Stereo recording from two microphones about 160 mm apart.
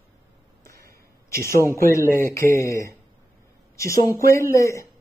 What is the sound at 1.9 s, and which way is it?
Speech, 15° left (ahead or behind).